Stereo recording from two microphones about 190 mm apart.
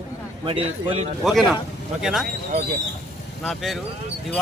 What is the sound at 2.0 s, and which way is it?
Speech, centre (ahead or behind).